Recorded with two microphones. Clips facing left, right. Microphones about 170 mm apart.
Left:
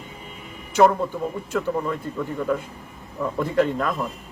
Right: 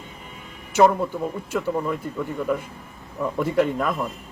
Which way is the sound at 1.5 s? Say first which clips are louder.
Even; 5° right (ahead or behind).